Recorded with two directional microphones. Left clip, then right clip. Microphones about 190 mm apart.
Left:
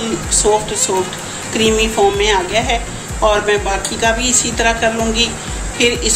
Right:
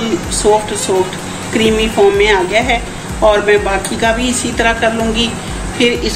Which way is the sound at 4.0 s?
10° right (ahead or behind).